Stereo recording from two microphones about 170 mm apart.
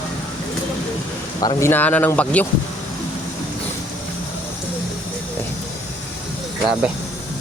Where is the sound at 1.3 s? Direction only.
20° left (ahead or behind).